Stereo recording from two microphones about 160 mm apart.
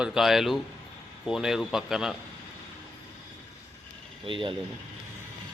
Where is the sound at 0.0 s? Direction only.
Centre (ahead or behind).